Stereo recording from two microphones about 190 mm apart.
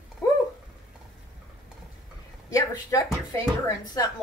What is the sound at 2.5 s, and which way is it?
Speech, 20° left (ahead or behind).